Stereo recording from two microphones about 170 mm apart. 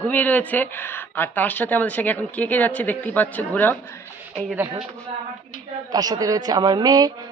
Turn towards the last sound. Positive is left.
turn(degrees=-20)  # may be behind; listen again after turning